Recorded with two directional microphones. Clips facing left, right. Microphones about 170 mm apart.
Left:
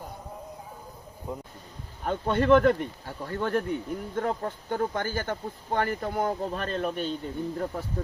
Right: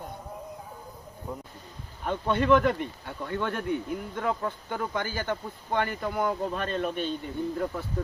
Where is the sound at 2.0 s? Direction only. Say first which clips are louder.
Left 1 dB; 45° left (ahead or behind).